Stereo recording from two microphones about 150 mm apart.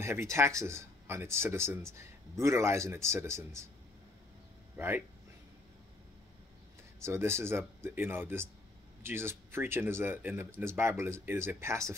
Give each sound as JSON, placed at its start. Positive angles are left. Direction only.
{"t": 0.0, "sound": "speech", "side_deg": -20}
{"t": 4.7, "sound": "speech", "side_deg": -15}
{"t": 7.0, "sound": "speech", "side_deg": -20}